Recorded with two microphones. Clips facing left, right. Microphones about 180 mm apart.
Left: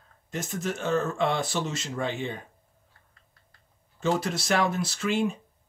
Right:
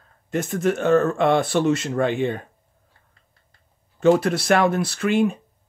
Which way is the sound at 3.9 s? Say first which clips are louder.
Right 10 dB; 60° right (ahead or behind).